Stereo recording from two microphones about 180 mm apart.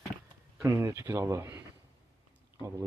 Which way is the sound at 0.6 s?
15° right (ahead or behind).